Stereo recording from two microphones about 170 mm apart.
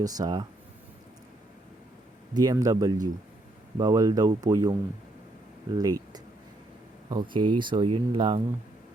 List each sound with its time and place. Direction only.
0.0 s speech: 25° right (ahead or behind)
2.3 s speech: 20° right (ahead or behind)